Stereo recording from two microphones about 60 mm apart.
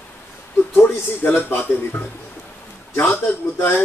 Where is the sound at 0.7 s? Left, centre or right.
Left.